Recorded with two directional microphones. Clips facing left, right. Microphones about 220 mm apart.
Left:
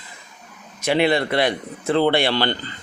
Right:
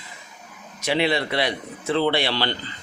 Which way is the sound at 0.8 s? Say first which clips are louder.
Left 4 dB; 50° left (ahead or behind).